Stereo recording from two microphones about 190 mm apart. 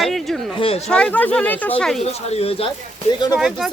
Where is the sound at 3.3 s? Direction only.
5° right (ahead or behind).